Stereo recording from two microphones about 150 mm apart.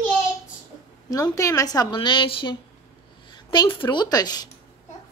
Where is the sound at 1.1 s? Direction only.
20° left (ahead or behind).